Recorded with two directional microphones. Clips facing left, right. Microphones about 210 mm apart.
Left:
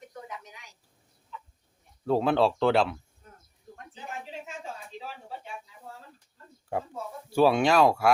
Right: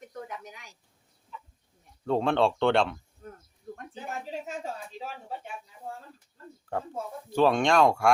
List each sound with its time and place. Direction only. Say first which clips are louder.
2.0 s speech: left 1 dB; 5° left (ahead or behind)
3.9 s a sound: right 3 dB; 40° right (ahead or behind)
7.3 s speech: left 1 dB; 10° left (ahead or behind)